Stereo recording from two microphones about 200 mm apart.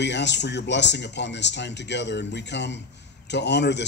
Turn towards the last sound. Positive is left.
turn(degrees=60)  # may be behind; listen again after turning